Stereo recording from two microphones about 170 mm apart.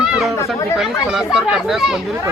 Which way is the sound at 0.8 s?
5° right (ahead or behind).